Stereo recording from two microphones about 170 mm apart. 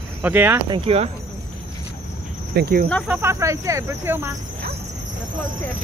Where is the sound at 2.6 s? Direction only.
60° right (ahead or behind).